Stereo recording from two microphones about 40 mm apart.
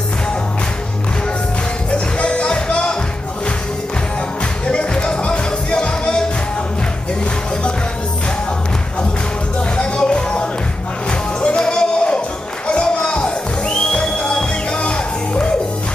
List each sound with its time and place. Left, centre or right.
1.9 s music: left
4.6 s music: left
9.8 s music: left